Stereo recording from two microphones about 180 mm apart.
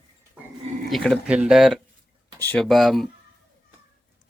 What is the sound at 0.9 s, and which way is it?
Speech, centre (ahead or behind).